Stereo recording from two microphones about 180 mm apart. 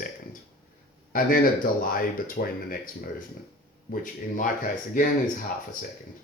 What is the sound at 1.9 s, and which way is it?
Speech, 50° left (ahead or behind).